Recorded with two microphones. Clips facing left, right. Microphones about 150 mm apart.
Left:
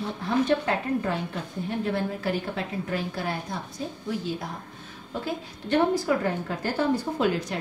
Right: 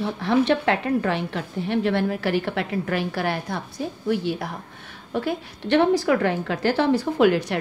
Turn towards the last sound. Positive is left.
turn(degrees=-70)  # may be behind; listen again after turning